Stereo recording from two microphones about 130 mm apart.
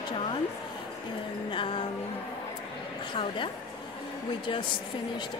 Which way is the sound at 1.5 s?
40° left (ahead or behind).